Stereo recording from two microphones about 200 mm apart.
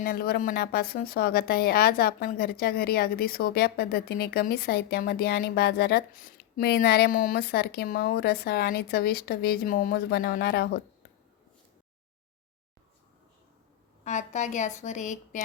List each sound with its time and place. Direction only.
0.0 s a woman's voice: 50° left (ahead or behind)
14.0 s a woman's voice: 35° left (ahead or behind)